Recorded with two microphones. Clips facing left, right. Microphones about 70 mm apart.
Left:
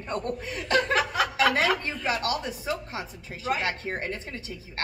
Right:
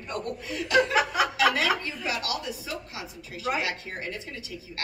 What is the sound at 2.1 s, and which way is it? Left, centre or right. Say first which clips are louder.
A woman's voice: left 4 dB; left.